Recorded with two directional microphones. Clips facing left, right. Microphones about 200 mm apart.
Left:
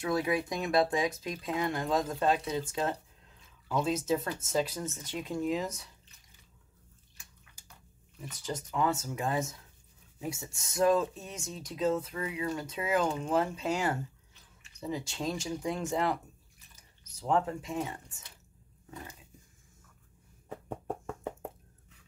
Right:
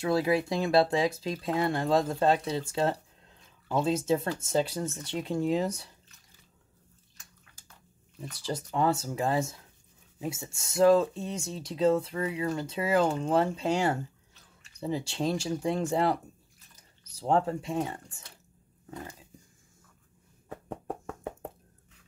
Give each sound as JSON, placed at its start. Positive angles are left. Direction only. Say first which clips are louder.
{"t": 0.0, "sound": "speech", "louder": "right 4 dB", "side_deg": -30}
{"t": 8.5, "sound": "speech", "louder": "right 3 dB", "side_deg": -30}
{"t": 20.4, "sound": "knock", "louder": "even", "side_deg": 5}